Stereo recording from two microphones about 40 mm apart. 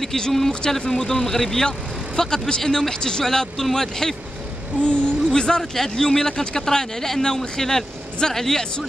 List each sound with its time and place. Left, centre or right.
0.0 s a man's voice: centre
4.8 s speech: left
5.6 s a man's voice: centre